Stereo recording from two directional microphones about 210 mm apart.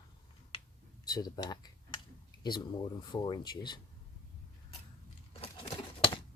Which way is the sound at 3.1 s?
20° left (ahead or behind).